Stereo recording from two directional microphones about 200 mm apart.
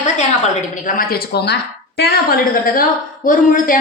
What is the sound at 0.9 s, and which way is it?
A woman's voice, 45° left (ahead or behind).